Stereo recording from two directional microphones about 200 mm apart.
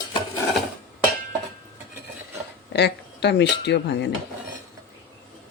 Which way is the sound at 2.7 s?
60° left (ahead or behind).